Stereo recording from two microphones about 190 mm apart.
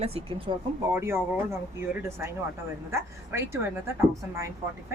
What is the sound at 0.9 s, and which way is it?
Speech, 15° right (ahead or behind).